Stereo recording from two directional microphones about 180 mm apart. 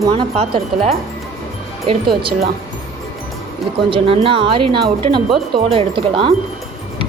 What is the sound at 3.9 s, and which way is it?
Speech, 30° right (ahead or behind).